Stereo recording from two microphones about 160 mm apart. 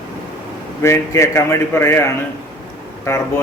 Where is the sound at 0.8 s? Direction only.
15° left (ahead or behind).